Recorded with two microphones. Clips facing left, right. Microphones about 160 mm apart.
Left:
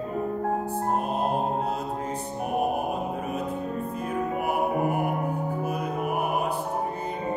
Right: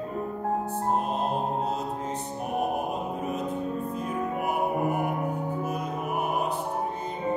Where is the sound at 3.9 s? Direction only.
55° left (ahead or behind).